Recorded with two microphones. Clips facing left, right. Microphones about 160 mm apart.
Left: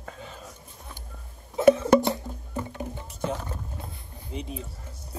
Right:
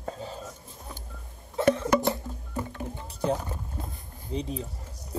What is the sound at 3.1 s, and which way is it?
Rowboat, 35° right (ahead or behind).